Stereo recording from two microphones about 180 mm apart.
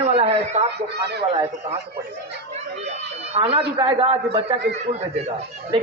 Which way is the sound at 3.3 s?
30° right (ahead or behind).